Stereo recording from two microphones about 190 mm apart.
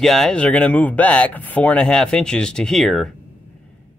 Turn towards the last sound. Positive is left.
turn(degrees=0)  # may be behind; listen again after turning